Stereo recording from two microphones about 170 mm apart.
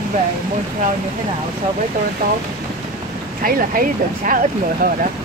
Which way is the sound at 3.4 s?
55° right (ahead or behind).